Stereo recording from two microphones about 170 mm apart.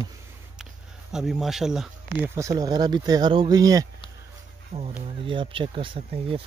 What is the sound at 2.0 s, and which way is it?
Speech, 15° right (ahead or behind).